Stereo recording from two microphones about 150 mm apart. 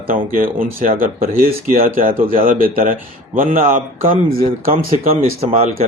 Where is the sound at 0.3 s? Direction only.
70° right (ahead or behind).